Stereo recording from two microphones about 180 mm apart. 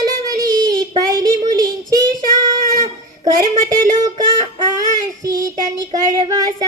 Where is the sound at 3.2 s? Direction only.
20° right (ahead or behind).